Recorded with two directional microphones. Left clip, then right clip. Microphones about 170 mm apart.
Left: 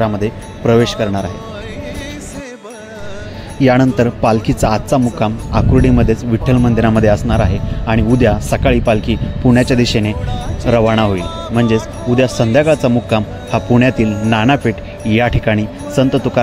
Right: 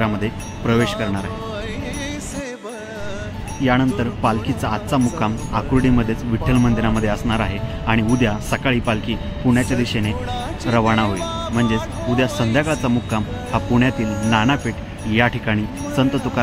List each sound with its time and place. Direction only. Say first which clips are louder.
0.0 s speech: left 6 dB; 20° left (ahead or behind)
3.6 s speech: left 7 dB; 40° left (ahead or behind); by 6.7 s 25° left (ahead or behind)
6.8 s speech: left 9 dB; 35° left (ahead or behind)
7.2 s speech: left 5 dB; 20° left (ahead or behind)
12.1 s speech: left 6 dB; centre (ahead or behind)
12.5 s speech: left 10 dB; 30° left (ahead or behind)
14.0 s speech: left 5 dB; centre (ahead or behind)
14.3 s speech: left 5 dB; 35° left (ahead or behind)